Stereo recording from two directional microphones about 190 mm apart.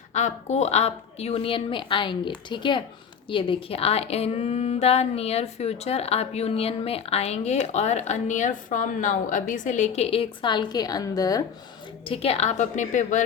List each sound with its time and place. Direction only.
0.1 s a woman's voice: 40° left (ahead or behind); by 11.4 s 20° left (ahead or behind)
12.0 s a woman's voice: 30° left (ahead or behind)